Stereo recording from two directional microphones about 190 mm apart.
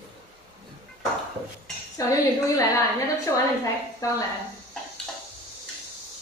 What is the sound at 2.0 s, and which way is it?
Speech, 20° left (ahead or behind).